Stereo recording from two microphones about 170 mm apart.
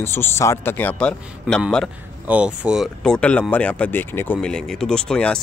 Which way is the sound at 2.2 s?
5° right (ahead or behind).